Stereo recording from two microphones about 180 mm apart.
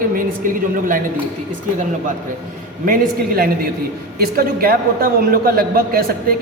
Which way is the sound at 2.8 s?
50° right (ahead or behind).